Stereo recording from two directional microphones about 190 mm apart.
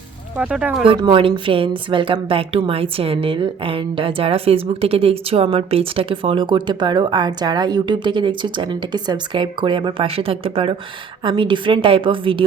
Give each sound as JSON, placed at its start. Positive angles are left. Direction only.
{"t": 0.3, "sound": "speech", "side_deg": -5}
{"t": 0.9, "sound": "a woman's voice", "side_deg": -25}